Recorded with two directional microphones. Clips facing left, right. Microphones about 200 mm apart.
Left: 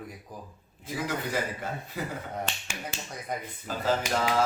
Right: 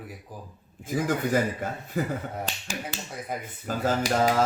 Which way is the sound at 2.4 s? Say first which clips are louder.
Right 3 dB; 35° right (ahead or behind).